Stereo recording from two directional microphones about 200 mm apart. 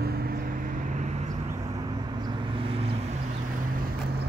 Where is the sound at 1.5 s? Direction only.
15° right (ahead or behind).